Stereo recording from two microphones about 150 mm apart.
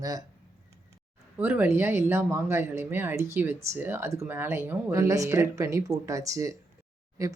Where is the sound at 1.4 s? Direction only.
10° right (ahead or behind).